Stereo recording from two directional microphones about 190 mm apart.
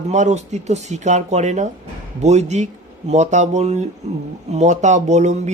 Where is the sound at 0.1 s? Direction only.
35° right (ahead or behind).